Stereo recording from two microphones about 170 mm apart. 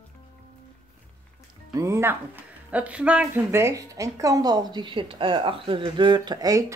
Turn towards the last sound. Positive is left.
turn(degrees=-20)  # may be behind; listen again after turning